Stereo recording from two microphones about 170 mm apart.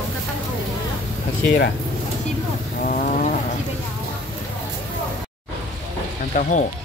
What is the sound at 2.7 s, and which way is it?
Wild animals, 50° left (ahead or behind).